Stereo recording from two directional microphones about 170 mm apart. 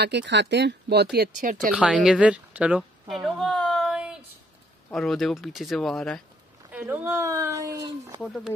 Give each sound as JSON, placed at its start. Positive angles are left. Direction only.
{"t": 0.0, "sound": "speech", "side_deg": -90}
{"t": 1.1, "sound": "speech", "side_deg": -60}
{"t": 1.7, "sound": "a woman's voice", "side_deg": -5}
{"t": 3.3, "sound": "a sound", "side_deg": 0}
{"t": 4.9, "sound": "speech", "side_deg": 0}
{"t": 6.7, "sound": "speech", "side_deg": -10}
{"t": 8.2, "sound": "speech", "side_deg": 0}